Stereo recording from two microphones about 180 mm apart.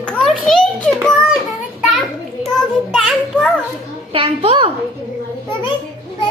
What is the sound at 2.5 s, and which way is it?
Child singing, centre (ahead or behind).